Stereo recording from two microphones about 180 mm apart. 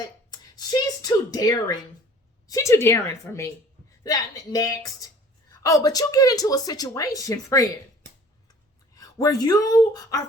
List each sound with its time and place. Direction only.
0.0 s a sound: 20° left (ahead or behind)
2.5 s a woman's voice: 15° left (ahead or behind)
9.0 s speech: 20° left (ahead or behind)